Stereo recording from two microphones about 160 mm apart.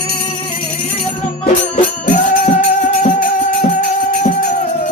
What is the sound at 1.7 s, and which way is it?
Music, 55° left (ahead or behind).